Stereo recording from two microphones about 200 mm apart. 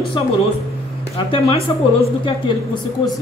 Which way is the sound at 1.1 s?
30° left (ahead or behind).